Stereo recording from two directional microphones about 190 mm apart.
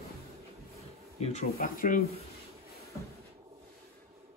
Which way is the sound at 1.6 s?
50° left (ahead or behind).